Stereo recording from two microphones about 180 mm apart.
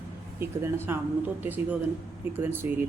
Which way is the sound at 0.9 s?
15° right (ahead or behind).